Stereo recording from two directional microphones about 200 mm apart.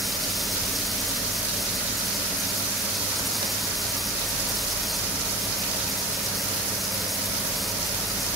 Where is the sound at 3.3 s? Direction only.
Centre (ahead or behind).